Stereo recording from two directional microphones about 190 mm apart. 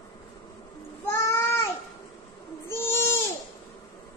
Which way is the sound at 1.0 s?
15° left (ahead or behind).